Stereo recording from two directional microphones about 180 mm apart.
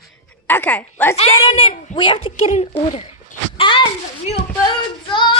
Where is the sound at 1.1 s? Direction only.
35° left (ahead or behind).